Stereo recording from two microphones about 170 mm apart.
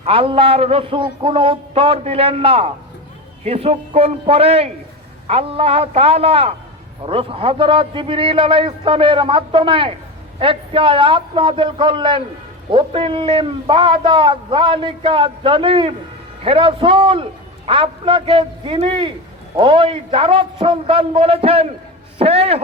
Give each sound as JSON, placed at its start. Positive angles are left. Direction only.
{"t": 0.0, "sound": "a man's voice", "side_deg": -30}